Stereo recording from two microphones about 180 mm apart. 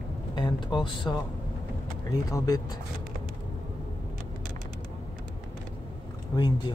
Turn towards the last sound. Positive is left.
turn(degrees=20)  # may be behind; listen again after turning